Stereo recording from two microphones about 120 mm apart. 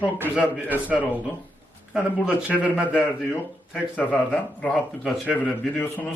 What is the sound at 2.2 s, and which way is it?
Speech, 10° right (ahead or behind).